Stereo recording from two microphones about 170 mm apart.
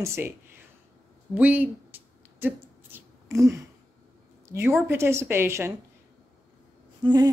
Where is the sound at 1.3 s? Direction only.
10° right (ahead or behind).